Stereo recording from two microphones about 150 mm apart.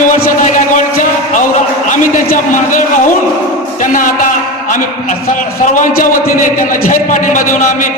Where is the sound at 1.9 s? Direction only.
60° left (ahead or behind).